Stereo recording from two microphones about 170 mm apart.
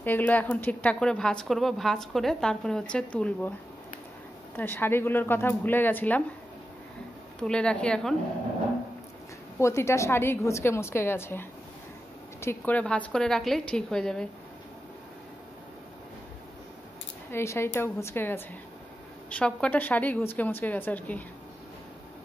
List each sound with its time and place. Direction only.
0.0 s a woman's voice: 10° left (ahead or behind)
4.6 s a woman's voice: 10° left (ahead or behind)
7.3 s a woman's voice: 5° left (ahead or behind)
9.6 s a woman's voice: 15° left (ahead or behind)
17.3 s a woman's voice: 15° left (ahead or behind)